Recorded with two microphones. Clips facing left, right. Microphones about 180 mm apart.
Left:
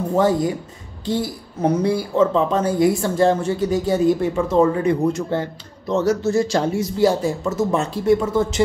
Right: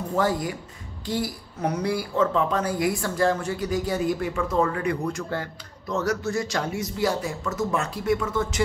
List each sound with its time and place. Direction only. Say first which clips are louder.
0.1 s speech: left 6 dB; 25° left (ahead or behind)